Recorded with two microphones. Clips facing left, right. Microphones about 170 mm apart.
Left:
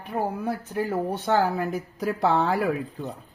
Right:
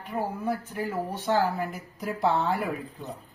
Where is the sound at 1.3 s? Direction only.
70° left (ahead or behind); by 2.6 s 90° left.